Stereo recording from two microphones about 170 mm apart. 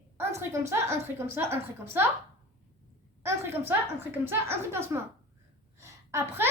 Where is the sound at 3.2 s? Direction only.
15° right (ahead or behind).